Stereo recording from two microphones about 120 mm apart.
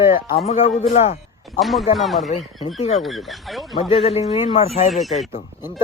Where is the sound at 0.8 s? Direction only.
70° left (ahead or behind).